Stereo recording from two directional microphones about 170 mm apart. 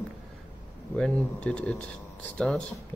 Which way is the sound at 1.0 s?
5° left (ahead or behind).